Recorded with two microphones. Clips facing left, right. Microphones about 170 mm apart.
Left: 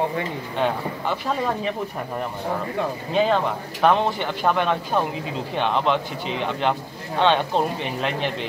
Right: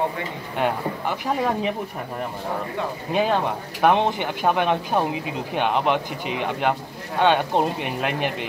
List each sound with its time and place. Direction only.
0.6 s speech: 15° right (ahead or behind)
3.1 s speech: 10° right (ahead or behind)